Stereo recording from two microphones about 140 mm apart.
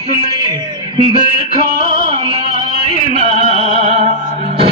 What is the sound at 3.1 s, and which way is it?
Music, 50° right (ahead or behind).